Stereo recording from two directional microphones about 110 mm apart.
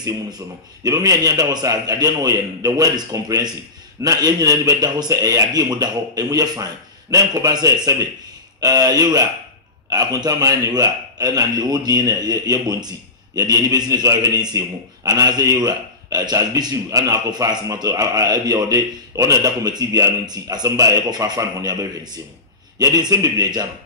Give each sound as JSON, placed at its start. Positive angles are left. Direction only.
{"t": 0.8, "sound": "a man's voice", "side_deg": -35}